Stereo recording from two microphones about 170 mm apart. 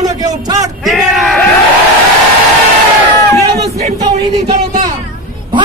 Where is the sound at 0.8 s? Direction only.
Centre (ahead or behind).